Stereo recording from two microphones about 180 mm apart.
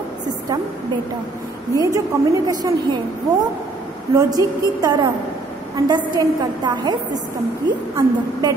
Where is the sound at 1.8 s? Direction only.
20° right (ahead or behind).